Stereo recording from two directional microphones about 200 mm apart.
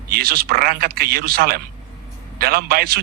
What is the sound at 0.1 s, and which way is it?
Speech, 50° right (ahead or behind).